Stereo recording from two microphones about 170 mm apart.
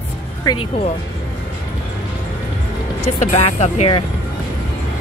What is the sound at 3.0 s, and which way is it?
Speech, 40° left (ahead or behind).